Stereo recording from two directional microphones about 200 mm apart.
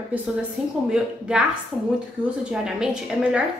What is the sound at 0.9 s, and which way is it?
A woman's voice, 5° right (ahead or behind).